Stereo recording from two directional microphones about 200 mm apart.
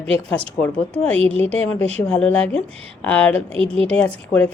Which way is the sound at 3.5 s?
30° right (ahead or behind).